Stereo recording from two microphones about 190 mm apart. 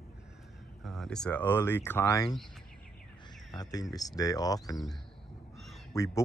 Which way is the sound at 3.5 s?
20° left (ahead or behind).